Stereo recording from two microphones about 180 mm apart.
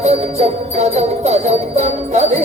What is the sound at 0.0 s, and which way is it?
Music, 35° right (ahead or behind).